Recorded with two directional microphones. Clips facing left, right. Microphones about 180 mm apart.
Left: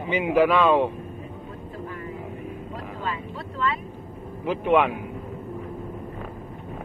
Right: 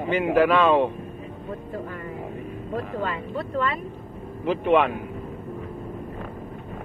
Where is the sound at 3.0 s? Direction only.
50° right (ahead or behind).